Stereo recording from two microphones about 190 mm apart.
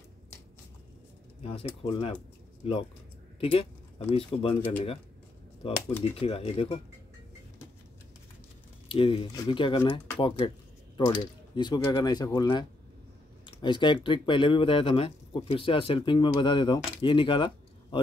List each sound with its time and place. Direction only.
1.4 s speech: 30° left (ahead or behind)
5.6 s speech: 30° left (ahead or behind)
8.8 s speech: 30° left (ahead or behind)